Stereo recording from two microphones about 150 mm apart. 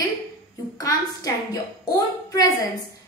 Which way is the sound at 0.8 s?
25° left (ahead or behind).